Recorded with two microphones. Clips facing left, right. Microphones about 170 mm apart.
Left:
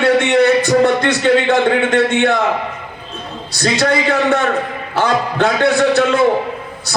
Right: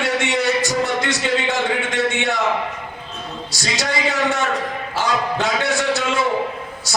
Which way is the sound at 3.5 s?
55° left (ahead or behind).